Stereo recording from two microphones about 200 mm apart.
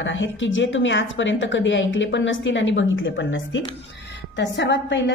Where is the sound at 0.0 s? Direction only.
70° left (ahead or behind).